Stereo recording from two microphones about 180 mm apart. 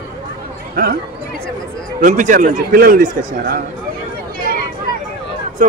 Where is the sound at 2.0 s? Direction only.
45° right (ahead or behind).